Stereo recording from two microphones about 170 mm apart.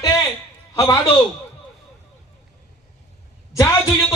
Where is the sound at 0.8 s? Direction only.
25° left (ahead or behind).